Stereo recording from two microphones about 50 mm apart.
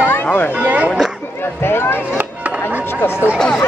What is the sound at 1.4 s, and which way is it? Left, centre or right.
Speech, left.